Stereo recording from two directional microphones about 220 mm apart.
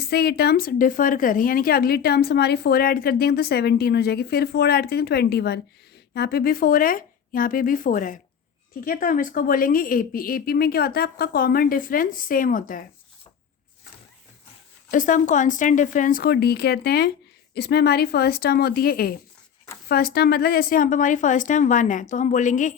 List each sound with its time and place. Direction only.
0.0 s a woman's voice: 45° left (ahead or behind)
14.8 s a woman's voice: 35° left (ahead or behind)